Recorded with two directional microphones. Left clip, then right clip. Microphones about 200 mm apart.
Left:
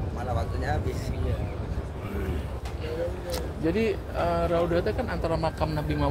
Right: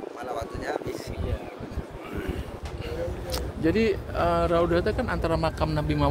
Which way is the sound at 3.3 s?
30° right (ahead or behind).